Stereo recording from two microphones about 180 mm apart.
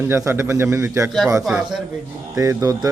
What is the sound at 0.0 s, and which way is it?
Speech, 15° right (ahead or behind).